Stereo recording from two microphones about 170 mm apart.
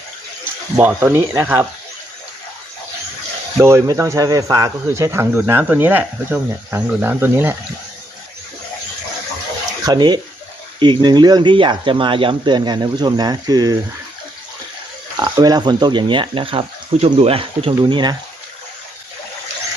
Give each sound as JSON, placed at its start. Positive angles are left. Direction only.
{"t": 0.8, "sound": "speech", "side_deg": -10}
{"t": 3.6, "sound": "speech", "side_deg": -15}
{"t": 9.8, "sound": "speech", "side_deg": -25}
{"t": 15.2, "sound": "speech", "side_deg": -25}